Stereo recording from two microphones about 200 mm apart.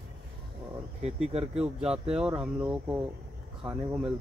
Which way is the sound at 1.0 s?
30° right (ahead or behind).